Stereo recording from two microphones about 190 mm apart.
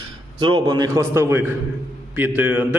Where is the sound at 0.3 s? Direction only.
25° right (ahead or behind).